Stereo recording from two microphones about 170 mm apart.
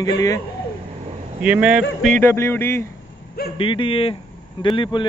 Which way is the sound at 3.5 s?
30° left (ahead or behind).